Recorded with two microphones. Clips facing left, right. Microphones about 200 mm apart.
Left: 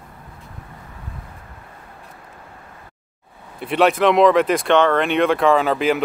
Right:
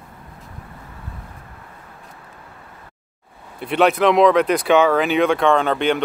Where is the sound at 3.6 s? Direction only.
Centre (ahead or behind).